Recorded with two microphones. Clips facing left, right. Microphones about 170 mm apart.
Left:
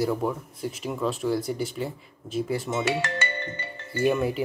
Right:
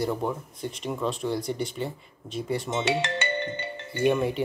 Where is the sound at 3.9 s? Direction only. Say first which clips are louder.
Even; centre (ahead or behind).